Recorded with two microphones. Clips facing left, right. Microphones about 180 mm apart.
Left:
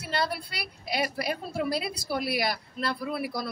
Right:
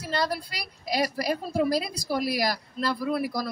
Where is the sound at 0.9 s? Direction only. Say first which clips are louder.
Right 3 dB; 35° right (ahead or behind).